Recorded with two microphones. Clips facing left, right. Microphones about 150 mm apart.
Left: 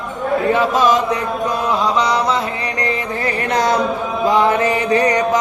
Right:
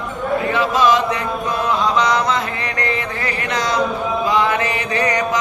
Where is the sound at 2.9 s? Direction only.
40° left (ahead or behind).